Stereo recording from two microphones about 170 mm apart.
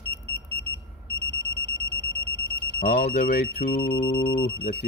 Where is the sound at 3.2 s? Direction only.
65° left (ahead or behind).